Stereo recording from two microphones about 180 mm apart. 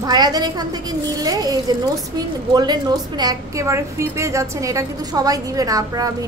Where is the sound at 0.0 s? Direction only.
20° right (ahead or behind).